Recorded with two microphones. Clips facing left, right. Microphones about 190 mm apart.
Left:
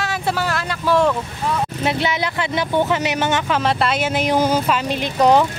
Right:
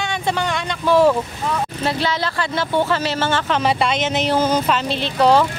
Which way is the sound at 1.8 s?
20° left (ahead or behind).